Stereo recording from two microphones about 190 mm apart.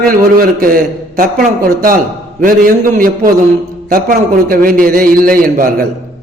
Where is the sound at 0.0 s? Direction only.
50° right (ahead or behind).